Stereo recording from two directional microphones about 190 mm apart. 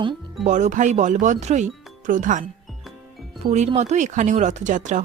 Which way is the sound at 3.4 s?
35° right (ahead or behind).